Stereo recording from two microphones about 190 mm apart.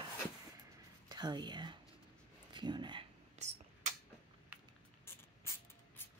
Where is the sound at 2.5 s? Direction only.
25° right (ahead or behind).